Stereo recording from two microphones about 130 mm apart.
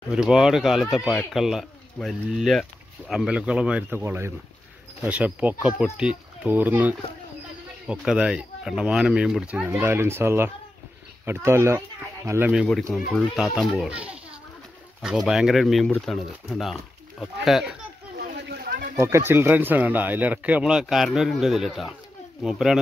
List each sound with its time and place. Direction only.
0.1 s speech: 5° right (ahead or behind)
4.0 s speech: 20° right (ahead or behind)
12.6 s speech: 5° left (ahead or behind)
18.2 s a sound: 90° right
18.9 s speech: 20° right (ahead or behind); by 22.8 s centre (ahead or behind)